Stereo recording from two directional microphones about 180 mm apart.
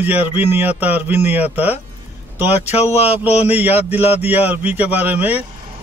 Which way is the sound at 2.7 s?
35° left (ahead or behind).